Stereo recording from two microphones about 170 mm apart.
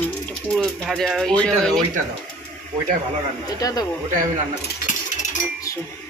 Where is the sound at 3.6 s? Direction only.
20° left (ahead or behind).